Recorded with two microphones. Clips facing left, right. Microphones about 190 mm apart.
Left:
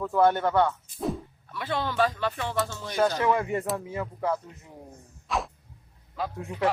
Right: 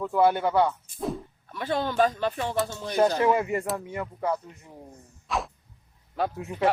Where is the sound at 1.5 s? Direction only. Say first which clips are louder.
Right 2 dB; 40° right (ahead or behind).